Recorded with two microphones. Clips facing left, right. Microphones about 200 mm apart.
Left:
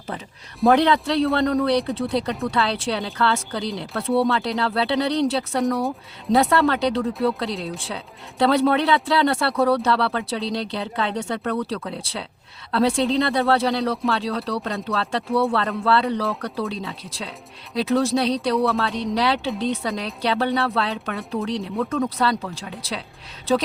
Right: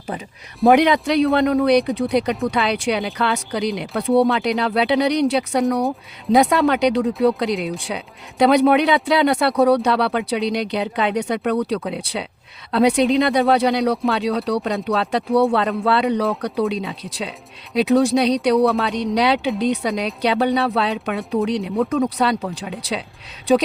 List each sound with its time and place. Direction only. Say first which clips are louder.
0.7 s speech: right 3 dB; 15° right (ahead or behind)